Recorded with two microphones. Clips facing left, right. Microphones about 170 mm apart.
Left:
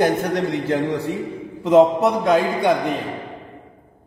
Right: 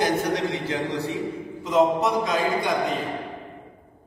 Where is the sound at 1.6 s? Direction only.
60° left (ahead or behind).